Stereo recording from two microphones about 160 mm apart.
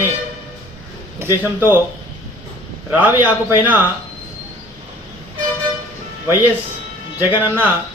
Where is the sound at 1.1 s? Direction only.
15° right (ahead or behind).